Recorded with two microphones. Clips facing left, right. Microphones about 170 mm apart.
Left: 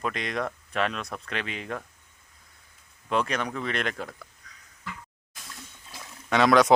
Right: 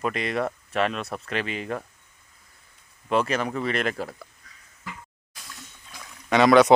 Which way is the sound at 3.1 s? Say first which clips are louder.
Right 3 dB; 5° right (ahead or behind).